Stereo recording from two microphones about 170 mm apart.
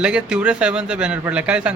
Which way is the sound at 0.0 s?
5° right (ahead or behind).